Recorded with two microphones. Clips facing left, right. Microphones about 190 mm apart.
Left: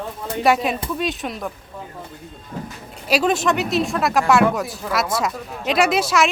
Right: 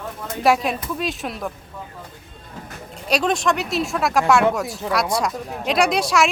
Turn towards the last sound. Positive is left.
turn(degrees=0)  # may be behind; listen again after turning